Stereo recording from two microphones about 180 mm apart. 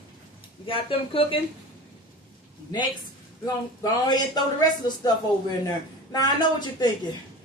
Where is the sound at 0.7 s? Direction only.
30° left (ahead or behind).